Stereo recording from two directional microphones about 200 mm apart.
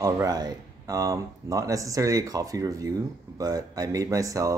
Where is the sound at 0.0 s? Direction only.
20° right (ahead or behind).